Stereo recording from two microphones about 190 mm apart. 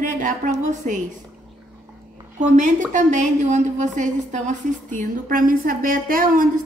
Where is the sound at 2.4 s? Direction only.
40° right (ahead or behind).